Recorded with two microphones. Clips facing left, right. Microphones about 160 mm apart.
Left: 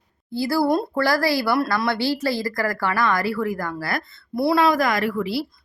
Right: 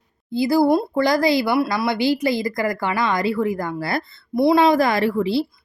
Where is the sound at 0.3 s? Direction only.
20° right (ahead or behind).